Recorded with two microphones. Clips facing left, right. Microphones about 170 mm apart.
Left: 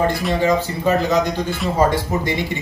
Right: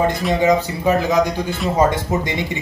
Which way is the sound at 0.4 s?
15° right (ahead or behind).